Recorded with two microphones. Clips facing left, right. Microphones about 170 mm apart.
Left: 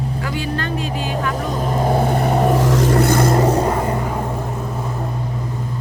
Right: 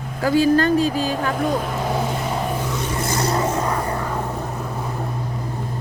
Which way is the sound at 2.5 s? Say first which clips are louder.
Left 9 dB; 90° left.